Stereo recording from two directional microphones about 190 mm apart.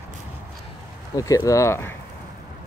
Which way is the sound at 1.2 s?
20° left (ahead or behind).